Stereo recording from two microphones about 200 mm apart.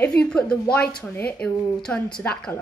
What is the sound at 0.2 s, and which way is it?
A woman's voice, 5° left (ahead or behind).